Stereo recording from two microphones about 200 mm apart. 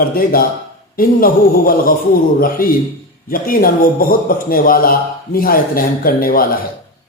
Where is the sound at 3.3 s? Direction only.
45° left (ahead or behind).